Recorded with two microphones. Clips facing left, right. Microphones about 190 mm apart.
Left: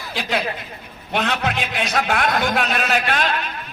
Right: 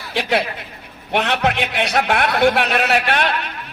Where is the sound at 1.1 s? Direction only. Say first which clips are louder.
Right 3 dB; 60° right (ahead or behind).